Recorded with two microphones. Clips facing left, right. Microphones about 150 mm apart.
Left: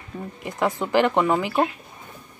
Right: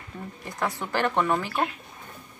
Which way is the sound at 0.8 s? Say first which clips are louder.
Left 6 dB; 15° left (ahead or behind).